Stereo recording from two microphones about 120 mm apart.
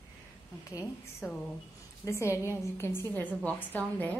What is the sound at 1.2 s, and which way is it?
A woman's voice, 20° left (ahead or behind).